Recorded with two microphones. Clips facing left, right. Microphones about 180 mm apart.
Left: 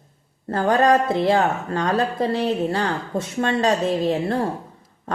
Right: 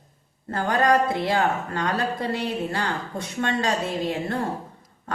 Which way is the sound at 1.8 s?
25° left (ahead or behind).